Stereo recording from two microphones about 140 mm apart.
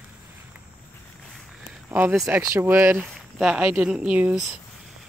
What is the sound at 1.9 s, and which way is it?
Speech, 15° right (ahead or behind).